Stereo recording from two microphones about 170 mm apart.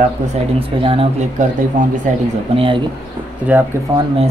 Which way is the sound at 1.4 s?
50° right (ahead or behind).